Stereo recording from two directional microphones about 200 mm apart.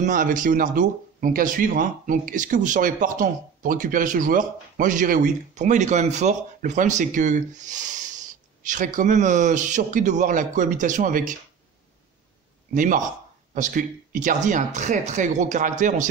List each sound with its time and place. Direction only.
0.0 s speech: 40° right (ahead or behind)
12.7 s speech: 40° right (ahead or behind)